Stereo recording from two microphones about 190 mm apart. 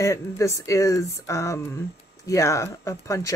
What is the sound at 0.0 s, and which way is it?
Speech, 15° left (ahead or behind).